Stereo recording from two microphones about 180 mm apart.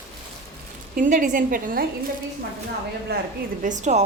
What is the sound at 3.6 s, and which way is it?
Speech, 40° right (ahead or behind).